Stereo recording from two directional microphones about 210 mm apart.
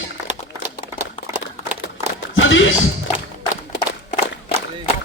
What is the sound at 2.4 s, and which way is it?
Music, 65° left (ahead or behind).